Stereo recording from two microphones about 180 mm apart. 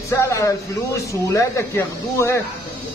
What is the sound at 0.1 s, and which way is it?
Speech, 15° left (ahead or behind).